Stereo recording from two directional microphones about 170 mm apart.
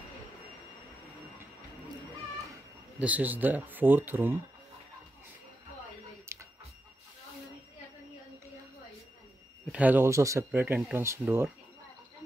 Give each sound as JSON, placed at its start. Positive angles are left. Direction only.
{"t": 3.0, "sound": "speech", "side_deg": -10}
{"t": 6.3, "sound": "a sound", "side_deg": -15}
{"t": 9.7, "sound": "speech", "side_deg": -10}